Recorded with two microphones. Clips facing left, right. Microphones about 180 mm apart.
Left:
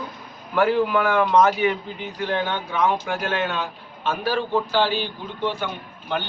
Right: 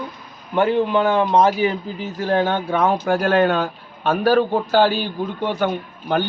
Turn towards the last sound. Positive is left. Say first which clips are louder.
# right 7 dB
turn(degrees=-45)  # may be behind; listen again after turning